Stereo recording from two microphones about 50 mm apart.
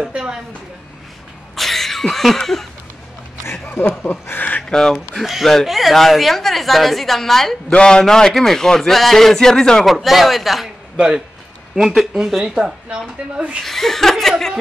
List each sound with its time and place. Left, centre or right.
0.0 s a woman's voice: centre
1.5 s a sound: centre
3.6 s speech: left
4.6 s speech: centre
5.1 s a woman's voice: centre
7.7 s a man's voice: centre
9.8 s a woman's voice: centre
11.0 s speech: centre
13.3 s speech: right
13.6 s a woman's voice: centre